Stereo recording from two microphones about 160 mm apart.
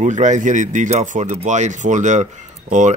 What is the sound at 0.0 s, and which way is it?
Speech, 50° right (ahead or behind).